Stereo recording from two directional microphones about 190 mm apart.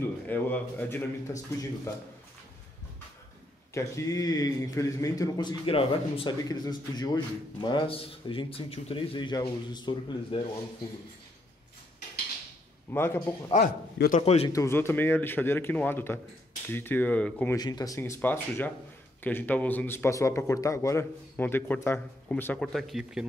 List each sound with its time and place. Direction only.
0.0 s a man's voice: 10° left (ahead or behind)
3.7 s a man's voice: 15° left (ahead or behind)
12.9 s a man's voice: 10° left (ahead or behind)
13.9 s a man's voice: 50° left (ahead or behind)
14.2 s a man's voice: 35° left (ahead or behind)
14.5 s a man's voice: 15° left (ahead or behind)
17.6 s a man's voice: 20° left (ahead or behind); by 23.2 s centre (ahead or behind)